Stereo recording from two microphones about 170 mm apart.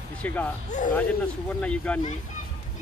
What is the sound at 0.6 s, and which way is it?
Speech, 45° left (ahead or behind).